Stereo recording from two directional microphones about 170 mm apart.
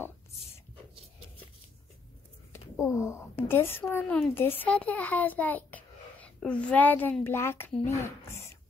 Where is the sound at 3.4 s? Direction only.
15° left (ahead or behind).